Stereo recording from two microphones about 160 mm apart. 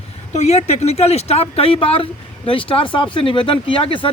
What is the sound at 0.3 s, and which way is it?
Speech, 45° left (ahead or behind).